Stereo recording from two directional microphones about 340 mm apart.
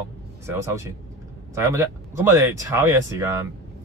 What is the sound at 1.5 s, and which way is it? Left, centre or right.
Speech, centre.